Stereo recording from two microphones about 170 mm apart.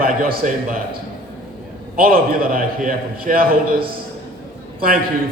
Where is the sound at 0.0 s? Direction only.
55° right (ahead or behind).